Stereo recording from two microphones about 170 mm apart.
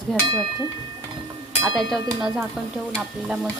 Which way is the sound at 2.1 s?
20° right (ahead or behind).